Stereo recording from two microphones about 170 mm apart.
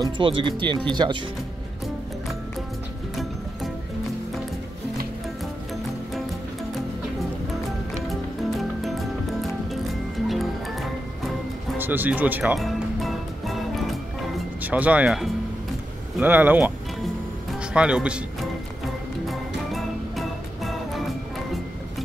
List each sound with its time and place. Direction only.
0.0 s speech: 30° right (ahead or behind)
8.1 s music: centre (ahead or behind)
11.8 s speech: 10° right (ahead or behind)
12.5 s music: centre (ahead or behind)
14.6 s speech: 10° right (ahead or behind)
17.7 s speech: 5° right (ahead or behind)
19.2 s music: centre (ahead or behind)